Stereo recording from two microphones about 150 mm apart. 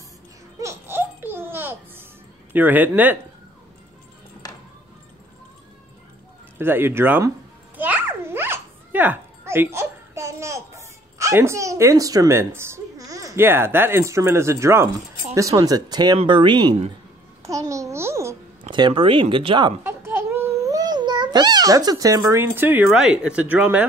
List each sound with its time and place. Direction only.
0.6 s music: 15° right (ahead or behind)
2.5 s speech: 10° right (ahead or behind)
6.6 s babbling: 15° right (ahead or behind)
15.3 s speech: 20° right (ahead or behind)
17.4 s babbling: 20° right (ahead or behind)
18.7 s speech: 30° right (ahead or behind)
19.8 s babbling: 15° right (ahead or behind)
22.3 s speech: 15° right (ahead or behind)